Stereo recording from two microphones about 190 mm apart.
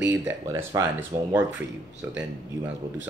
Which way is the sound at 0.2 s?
15° right (ahead or behind).